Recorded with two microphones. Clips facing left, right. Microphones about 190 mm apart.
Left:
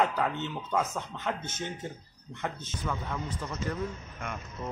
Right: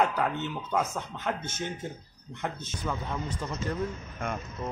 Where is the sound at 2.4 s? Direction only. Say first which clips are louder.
Right 1 dB; 15° right (ahead or behind).